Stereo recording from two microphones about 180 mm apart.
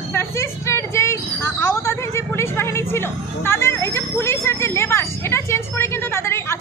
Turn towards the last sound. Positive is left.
turn(degrees=15)  # may be behind; listen again after turning